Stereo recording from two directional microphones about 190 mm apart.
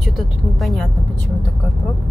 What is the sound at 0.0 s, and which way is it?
Speech, centre (ahead or behind).